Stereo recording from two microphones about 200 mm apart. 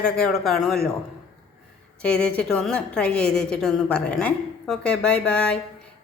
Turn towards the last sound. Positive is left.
turn(degrees=5)  # may be behind; listen again after turning